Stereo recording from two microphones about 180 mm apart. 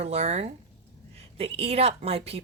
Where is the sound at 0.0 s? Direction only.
35° right (ahead or behind).